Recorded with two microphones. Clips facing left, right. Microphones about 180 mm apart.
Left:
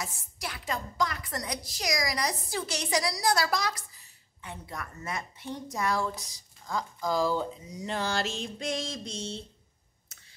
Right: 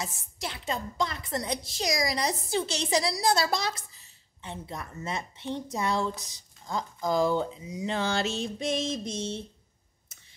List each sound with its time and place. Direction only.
0.0 s a woman's voice: 25° right (ahead or behind)